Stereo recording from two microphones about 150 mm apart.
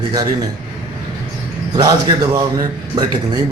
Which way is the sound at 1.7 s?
30° right (ahead or behind).